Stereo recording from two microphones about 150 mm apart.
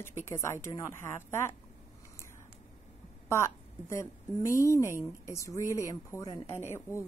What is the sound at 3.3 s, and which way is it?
A woman's voice, 20° left (ahead or behind).